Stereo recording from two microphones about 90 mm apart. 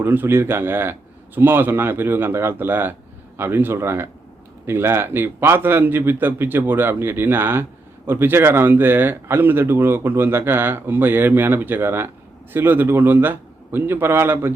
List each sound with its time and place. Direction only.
0.0 s speech: 25° right (ahead or behind)